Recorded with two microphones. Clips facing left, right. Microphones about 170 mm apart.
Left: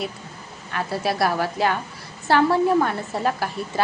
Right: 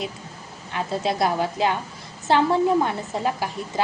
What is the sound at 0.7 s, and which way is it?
A woman's voice, 20° right (ahead or behind).